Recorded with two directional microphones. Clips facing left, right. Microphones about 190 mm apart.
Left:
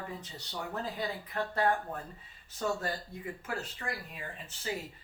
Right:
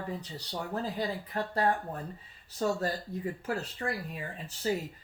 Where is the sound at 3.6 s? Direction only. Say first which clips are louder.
Right 5 dB; 35° right (ahead or behind).